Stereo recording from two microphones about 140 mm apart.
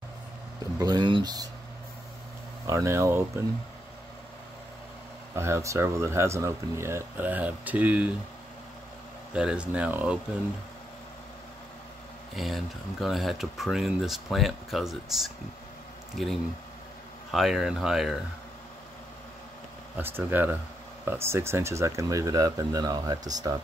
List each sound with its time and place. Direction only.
0.7 s speech: 30° right (ahead or behind)
2.6 s speech: 20° right (ahead or behind)
5.3 s speech: 20° right (ahead or behind)
9.3 s speech: 5° right (ahead or behind)
12.4 s speech: centre (ahead or behind)
20.0 s speech: 15° right (ahead or behind)